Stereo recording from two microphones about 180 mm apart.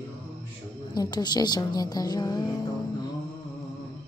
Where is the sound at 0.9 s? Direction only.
25° left (ahead or behind).